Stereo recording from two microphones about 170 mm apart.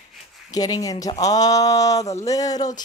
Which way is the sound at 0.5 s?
20° left (ahead or behind).